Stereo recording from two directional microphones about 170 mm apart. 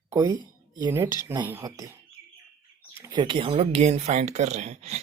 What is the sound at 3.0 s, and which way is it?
Speech, 25° right (ahead or behind).